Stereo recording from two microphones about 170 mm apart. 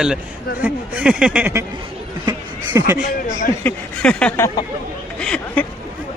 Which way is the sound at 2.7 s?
15° right (ahead or behind).